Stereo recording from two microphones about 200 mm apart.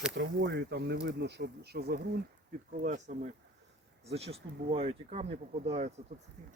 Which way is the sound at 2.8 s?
40° right (ahead or behind).